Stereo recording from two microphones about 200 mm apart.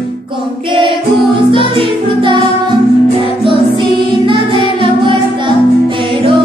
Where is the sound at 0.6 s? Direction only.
25° right (ahead or behind).